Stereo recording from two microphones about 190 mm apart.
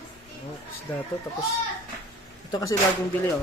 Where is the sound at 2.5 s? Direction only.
15° left (ahead or behind).